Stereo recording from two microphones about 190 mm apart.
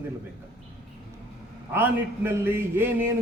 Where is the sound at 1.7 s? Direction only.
10° right (ahead or behind).